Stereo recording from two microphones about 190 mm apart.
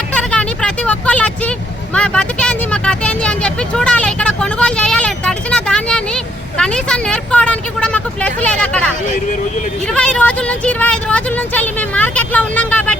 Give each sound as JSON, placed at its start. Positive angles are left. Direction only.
{"t": 0.1, "sound": "vehicle", "side_deg": 5}